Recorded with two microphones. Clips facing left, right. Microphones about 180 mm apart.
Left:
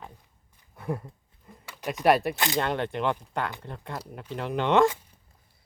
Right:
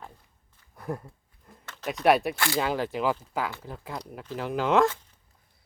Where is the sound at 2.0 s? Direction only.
Centre (ahead or behind).